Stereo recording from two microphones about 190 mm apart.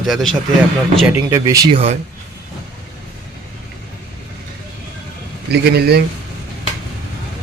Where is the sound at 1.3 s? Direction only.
15° right (ahead or behind).